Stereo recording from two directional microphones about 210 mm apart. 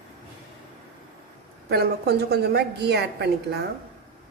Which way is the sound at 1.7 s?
50° right (ahead or behind).